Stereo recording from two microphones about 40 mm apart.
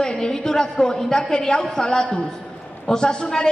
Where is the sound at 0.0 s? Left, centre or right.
Centre.